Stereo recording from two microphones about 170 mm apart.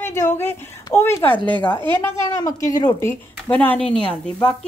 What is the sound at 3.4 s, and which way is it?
Speech, 10° left (ahead or behind).